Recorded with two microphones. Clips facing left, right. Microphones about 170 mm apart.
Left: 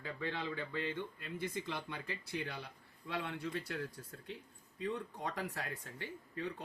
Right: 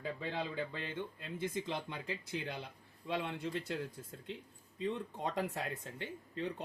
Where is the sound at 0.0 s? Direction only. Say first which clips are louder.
Right 1 dB; 15° right (ahead or behind).